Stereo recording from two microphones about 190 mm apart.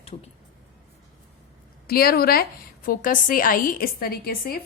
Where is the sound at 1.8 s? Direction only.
55° left (ahead or behind).